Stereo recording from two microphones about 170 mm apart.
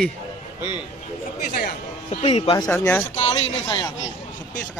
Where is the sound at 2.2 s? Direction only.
35° left (ahead or behind).